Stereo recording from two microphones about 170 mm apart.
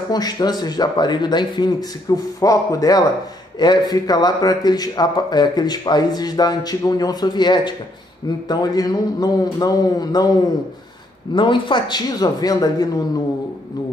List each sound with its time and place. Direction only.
0.1 s a man's voice: 25° left (ahead or behind)
11.3 s a man's voice: 30° left (ahead or behind)